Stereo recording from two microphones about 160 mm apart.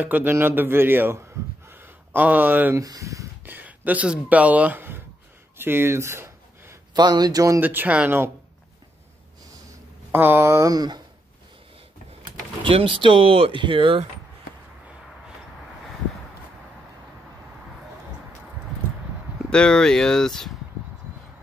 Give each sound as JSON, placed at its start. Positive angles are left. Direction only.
{"t": 0.0, "sound": "a man's voice", "side_deg": -10}
{"t": 10.1, "sound": "a man's voice", "side_deg": -15}
{"t": 12.6, "sound": "speech", "side_deg": -35}
{"t": 19.5, "sound": "speech", "side_deg": 5}